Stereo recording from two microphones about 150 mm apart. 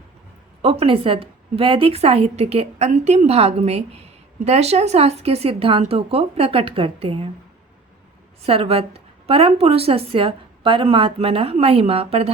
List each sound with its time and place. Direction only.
0.6 s a woman's voice: 40° right (ahead or behind)
8.4 s a woman's voice: 40° right (ahead or behind)